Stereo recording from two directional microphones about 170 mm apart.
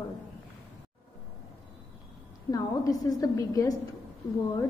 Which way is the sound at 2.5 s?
20° left (ahead or behind).